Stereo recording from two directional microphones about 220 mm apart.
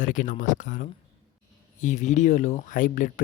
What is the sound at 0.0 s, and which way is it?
Speech, 35° left (ahead or behind).